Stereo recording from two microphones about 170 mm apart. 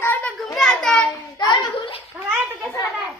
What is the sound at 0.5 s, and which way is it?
Child singing, 5° left (ahead or behind).